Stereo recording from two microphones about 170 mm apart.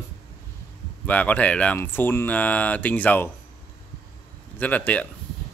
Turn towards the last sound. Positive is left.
turn(degrees=10)  # may be behind; listen again after turning